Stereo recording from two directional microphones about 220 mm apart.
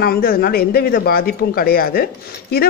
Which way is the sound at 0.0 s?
45° left (ahead or behind).